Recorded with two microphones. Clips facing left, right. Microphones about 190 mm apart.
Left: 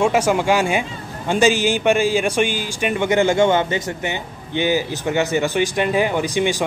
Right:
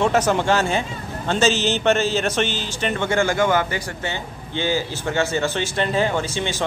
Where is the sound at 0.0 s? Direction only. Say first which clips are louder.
Left 2 dB; 10° left (ahead or behind).